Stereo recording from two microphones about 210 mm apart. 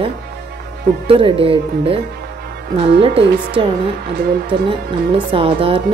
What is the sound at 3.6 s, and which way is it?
Speech, 25° right (ahead or behind).